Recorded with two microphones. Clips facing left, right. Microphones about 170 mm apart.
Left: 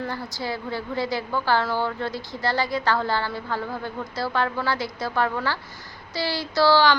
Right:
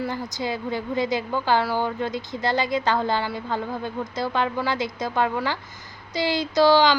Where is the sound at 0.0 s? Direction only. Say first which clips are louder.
Right 2 dB; 20° right (ahead or behind).